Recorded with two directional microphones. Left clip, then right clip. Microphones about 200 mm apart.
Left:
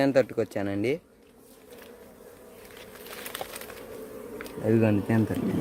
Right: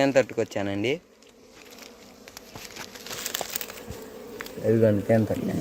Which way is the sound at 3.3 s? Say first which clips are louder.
Right 4 dB; 50° right (ahead or behind).